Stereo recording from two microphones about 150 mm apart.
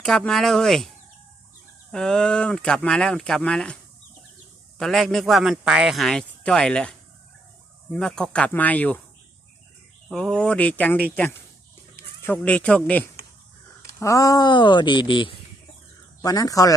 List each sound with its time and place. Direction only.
0.0 s speech: 5° left (ahead or behind)
1.9 s speech: 5° left (ahead or behind)
4.8 s speech: centre (ahead or behind)
10.1 s speech: 5° left (ahead or behind)
14.0 s speech: 20° left (ahead or behind)